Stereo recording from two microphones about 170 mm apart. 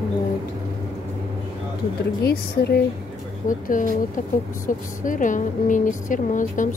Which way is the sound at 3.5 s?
50° left (ahead or behind).